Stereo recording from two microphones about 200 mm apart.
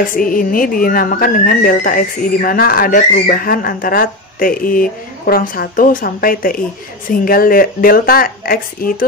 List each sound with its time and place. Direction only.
0.0 s speech: 45° left (ahead or behind)